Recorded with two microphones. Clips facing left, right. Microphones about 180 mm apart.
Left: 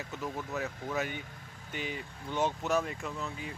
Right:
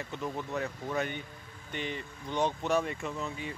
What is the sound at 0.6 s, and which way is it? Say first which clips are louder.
Speech: right 1 dB; 5° left (ahead or behind).